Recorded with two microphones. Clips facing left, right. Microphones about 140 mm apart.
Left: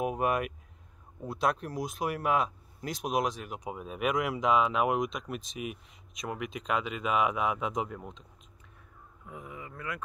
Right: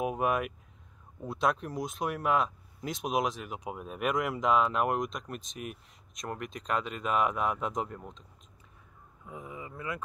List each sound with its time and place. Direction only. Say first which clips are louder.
0.0 s speech: even; centre (ahead or behind)
9.5 s speech: right 2 dB; 25° right (ahead or behind)